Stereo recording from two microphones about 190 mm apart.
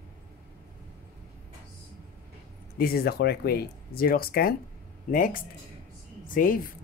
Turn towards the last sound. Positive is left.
turn(degrees=45)  # may be behind; listen again after turning